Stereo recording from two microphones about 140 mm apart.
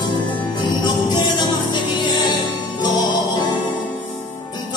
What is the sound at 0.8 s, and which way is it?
Music, 30° left (ahead or behind).